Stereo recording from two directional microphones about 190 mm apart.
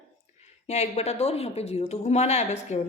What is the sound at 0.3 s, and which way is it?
A woman's voice, 35° left (ahead or behind).